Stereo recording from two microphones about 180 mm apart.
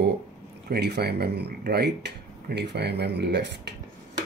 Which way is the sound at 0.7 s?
65° right (ahead or behind).